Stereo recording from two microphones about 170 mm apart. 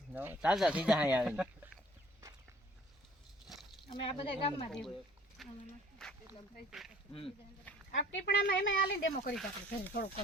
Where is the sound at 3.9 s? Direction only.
35° left (ahead or behind).